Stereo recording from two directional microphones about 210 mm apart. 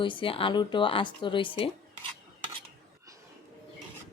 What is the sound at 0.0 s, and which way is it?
Speech, 25° left (ahead or behind).